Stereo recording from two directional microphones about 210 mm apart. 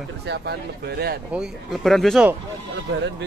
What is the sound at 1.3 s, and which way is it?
Speech, centre (ahead or behind).